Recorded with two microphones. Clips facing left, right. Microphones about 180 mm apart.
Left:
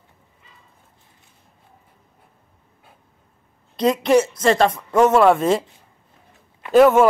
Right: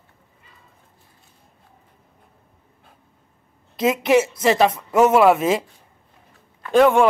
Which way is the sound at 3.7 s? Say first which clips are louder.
Left 1 dB; 5° right (ahead or behind).